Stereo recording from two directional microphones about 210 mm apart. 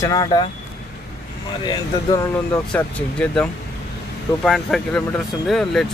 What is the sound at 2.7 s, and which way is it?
Speech, 5° left (ahead or behind).